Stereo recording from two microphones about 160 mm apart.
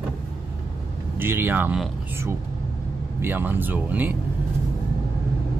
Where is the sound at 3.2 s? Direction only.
15° right (ahead or behind).